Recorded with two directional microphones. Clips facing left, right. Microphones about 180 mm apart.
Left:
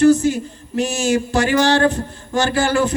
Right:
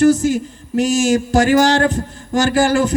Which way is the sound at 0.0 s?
45° right (ahead or behind).